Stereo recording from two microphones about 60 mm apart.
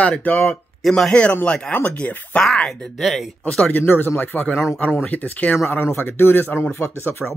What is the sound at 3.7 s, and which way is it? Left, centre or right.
Speech, left.